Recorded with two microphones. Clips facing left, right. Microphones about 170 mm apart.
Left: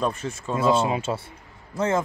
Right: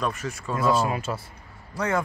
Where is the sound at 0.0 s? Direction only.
30° left (ahead or behind).